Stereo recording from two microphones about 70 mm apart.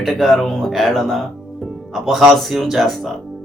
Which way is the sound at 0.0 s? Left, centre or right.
Centre.